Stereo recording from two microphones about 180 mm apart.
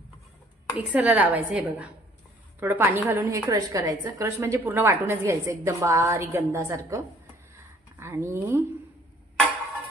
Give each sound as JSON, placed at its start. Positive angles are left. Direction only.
{"t": 0.7, "sound": "a woman's voice", "side_deg": -10}
{"t": 8.0, "sound": "a woman's voice", "side_deg": -15}